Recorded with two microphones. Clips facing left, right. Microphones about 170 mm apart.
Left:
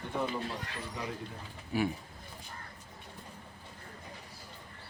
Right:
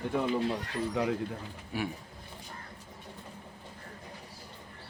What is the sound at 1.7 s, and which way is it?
Speech, centre (ahead or behind).